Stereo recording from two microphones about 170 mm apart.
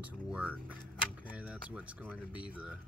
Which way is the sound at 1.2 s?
5° right (ahead or behind).